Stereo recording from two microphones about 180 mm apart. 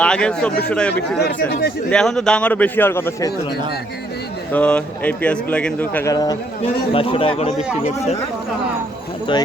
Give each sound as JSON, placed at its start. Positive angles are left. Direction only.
{"t": 0.0, "sound": "speech", "side_deg": 5}
{"t": 1.2, "sound": "speech", "side_deg": 55}
{"t": 1.9, "sound": "speech", "side_deg": 5}
{"t": 4.5, "sound": "speech", "side_deg": 5}
{"t": 6.9, "sound": "speech", "side_deg": 30}